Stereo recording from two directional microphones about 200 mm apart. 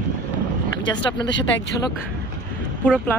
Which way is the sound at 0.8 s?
20° left (ahead or behind).